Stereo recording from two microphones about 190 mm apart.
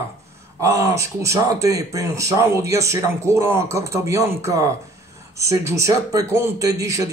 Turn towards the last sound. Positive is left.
turn(degrees=-15)  # may be behind; listen again after turning